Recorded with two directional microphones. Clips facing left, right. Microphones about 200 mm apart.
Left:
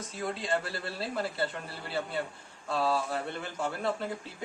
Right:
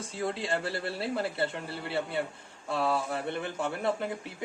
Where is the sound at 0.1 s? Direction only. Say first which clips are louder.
Right 1 dB; 30° right (ahead or behind).